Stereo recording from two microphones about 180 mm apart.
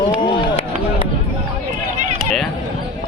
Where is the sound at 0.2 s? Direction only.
25° left (ahead or behind).